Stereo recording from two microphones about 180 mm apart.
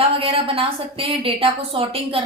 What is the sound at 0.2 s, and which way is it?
A woman's voice, 30° right (ahead or behind).